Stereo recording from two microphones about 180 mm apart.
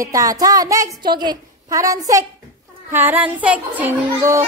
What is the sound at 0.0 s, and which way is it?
A woman's voice, 20° right (ahead or behind).